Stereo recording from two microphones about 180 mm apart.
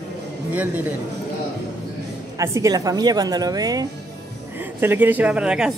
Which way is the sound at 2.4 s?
15° right (ahead or behind).